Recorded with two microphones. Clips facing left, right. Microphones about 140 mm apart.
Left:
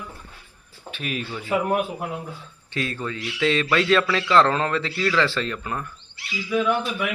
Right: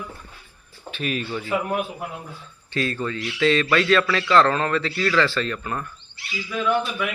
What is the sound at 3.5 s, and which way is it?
A man's voice, 20° left (ahead or behind).